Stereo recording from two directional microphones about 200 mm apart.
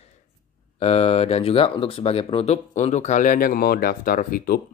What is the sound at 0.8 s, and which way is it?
Speech, 30° left (ahead or behind).